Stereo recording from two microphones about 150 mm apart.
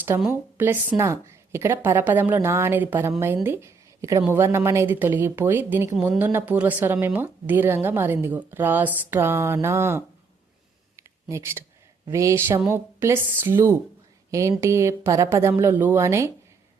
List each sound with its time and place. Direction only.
0.3 s speech: 15° right (ahead or behind)
10.9 s a sound: 20° right (ahead or behind)
12.0 s speech: 20° right (ahead or behind)